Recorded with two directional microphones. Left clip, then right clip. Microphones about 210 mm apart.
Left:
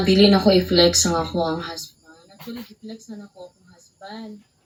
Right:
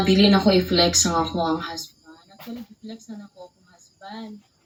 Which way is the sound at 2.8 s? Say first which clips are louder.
Left 1 dB; 5° left (ahead or behind).